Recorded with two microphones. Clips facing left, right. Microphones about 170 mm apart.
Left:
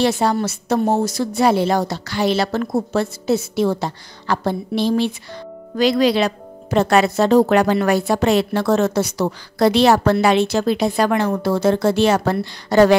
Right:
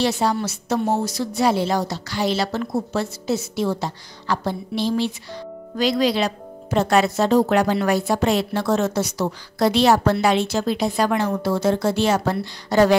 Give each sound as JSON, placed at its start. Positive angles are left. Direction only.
{"t": 0.0, "sound": "a woman's voice", "side_deg": 55}